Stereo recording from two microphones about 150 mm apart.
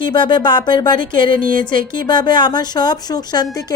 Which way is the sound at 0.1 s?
30° left (ahead or behind).